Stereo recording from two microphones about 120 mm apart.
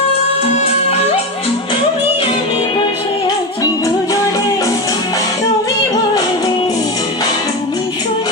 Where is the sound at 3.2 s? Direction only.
30° left (ahead or behind).